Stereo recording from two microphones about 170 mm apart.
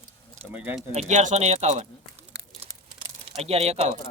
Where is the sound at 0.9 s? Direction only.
40° right (ahead or behind).